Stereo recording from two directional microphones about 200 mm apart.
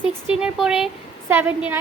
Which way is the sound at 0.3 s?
5° right (ahead or behind).